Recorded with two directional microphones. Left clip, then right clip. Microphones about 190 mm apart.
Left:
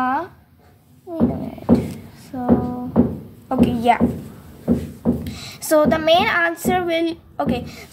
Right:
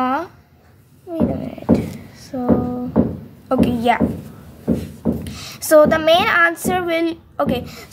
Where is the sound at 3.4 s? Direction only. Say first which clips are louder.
Even; 15° right (ahead or behind).